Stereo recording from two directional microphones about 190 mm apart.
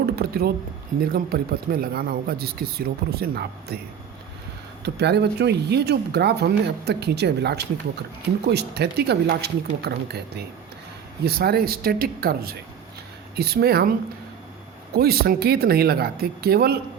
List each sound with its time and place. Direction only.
0.0 s a sound: 55° right (ahead or behind)
1.1 s speech: 50° right (ahead or behind)
4.9 s speech: 60° right (ahead or behind)
14.9 s speech: 55° right (ahead or behind)